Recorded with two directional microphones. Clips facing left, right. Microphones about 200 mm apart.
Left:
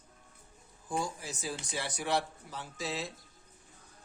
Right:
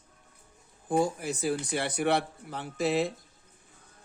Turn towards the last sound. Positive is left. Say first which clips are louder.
# right 11 dB
turn(degrees=-60)  # may be behind; listen again after turning